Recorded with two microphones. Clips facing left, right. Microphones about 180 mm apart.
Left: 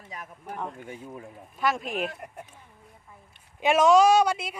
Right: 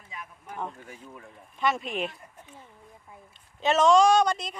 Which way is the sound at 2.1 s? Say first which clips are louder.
Left 9 dB; 70° left (ahead or behind).